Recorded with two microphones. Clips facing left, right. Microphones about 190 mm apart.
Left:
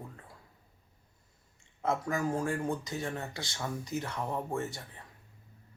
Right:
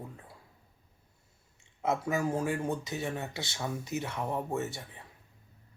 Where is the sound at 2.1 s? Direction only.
5° right (ahead or behind).